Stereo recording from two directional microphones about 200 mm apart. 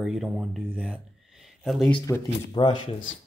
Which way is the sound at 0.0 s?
Centre (ahead or behind).